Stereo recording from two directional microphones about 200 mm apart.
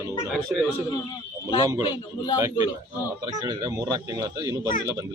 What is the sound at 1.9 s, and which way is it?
Speech, 25° left (ahead or behind).